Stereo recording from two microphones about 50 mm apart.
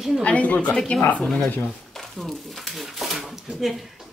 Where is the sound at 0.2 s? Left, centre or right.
Left.